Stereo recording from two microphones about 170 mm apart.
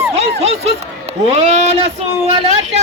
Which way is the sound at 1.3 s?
40° right (ahead or behind).